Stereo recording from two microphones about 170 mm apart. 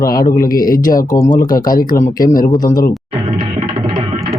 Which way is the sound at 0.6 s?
55° left (ahead or behind).